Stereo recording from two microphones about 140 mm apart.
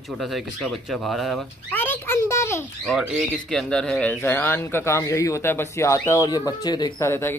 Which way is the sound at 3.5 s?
5° left (ahead or behind).